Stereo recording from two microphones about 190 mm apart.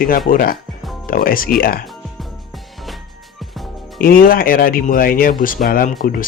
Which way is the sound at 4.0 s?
50° left (ahead or behind).